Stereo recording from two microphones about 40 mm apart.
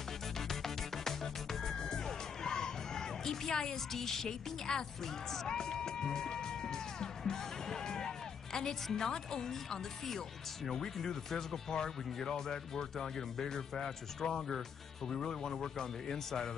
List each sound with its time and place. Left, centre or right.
0.5 s music: centre
8.5 s speech: centre